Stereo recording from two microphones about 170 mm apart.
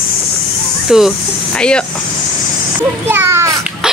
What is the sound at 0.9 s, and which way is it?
Speech, 5° right (ahead or behind).